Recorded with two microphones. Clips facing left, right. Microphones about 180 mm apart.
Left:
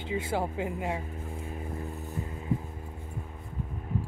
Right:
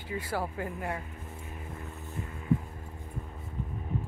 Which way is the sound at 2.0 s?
20° left (ahead or behind).